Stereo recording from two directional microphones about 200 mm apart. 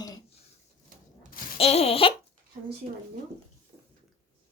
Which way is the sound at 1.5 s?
30° left (ahead or behind).